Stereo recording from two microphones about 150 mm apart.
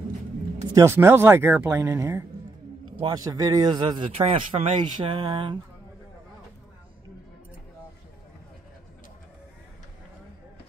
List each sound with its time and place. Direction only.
0.7 s a man's voice: 15° right (ahead or behind); by 5.6 s 30° right (ahead or behind)